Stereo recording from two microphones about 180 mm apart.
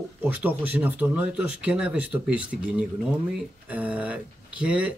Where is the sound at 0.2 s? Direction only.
10° right (ahead or behind).